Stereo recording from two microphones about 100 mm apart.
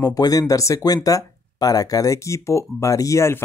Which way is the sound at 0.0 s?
40° left (ahead or behind).